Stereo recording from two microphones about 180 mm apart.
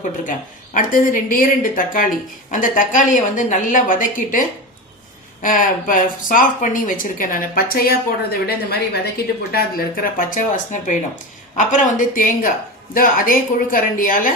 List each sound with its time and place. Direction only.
0.0 s speech: 45° left (ahead or behind)